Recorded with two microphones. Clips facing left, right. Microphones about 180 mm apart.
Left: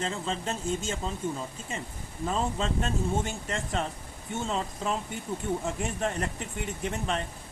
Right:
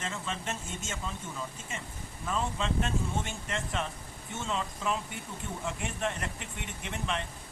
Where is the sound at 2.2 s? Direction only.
35° left (ahead or behind).